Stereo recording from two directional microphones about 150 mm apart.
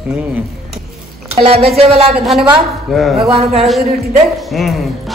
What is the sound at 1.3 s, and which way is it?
Speech, 40° right (ahead or behind).